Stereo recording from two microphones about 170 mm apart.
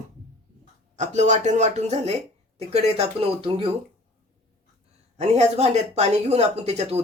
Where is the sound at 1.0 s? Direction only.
45° right (ahead or behind).